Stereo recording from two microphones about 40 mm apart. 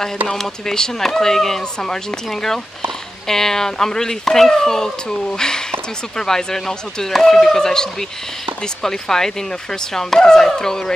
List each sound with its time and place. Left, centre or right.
0.3 s speech: centre
3.3 s speech: centre